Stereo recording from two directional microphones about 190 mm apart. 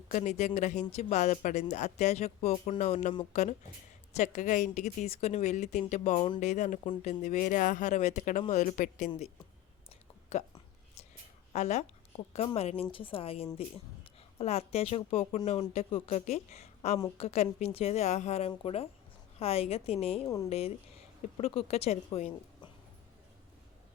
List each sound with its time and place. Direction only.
0.1 s speech: 40° left (ahead or behind)
10.3 s speech: 35° left (ahead or behind)
11.5 s a woman's voice: 35° left (ahead or behind)